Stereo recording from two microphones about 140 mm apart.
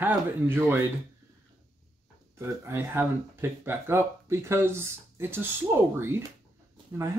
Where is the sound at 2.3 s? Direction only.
20° right (ahead or behind).